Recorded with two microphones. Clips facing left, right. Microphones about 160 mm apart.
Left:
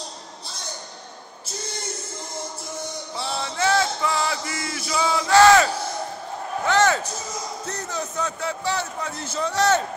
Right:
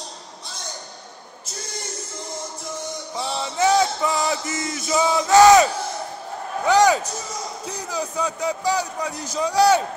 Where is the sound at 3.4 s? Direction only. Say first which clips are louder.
Right 4 dB; 20° right (ahead or behind).